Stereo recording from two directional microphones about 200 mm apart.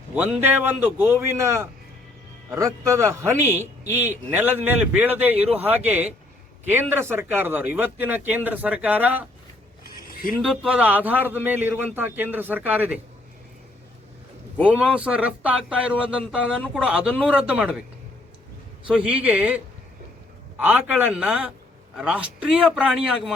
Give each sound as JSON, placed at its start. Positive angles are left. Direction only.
{"t": 0.1, "sound": "a man's voice", "side_deg": -10}
{"t": 10.1, "sound": "a sound", "side_deg": 45}
{"t": 10.4, "sound": "a man's voice", "side_deg": -5}
{"t": 14.6, "sound": "a man's voice", "side_deg": -5}
{"t": 18.9, "sound": "a man's voice", "side_deg": -5}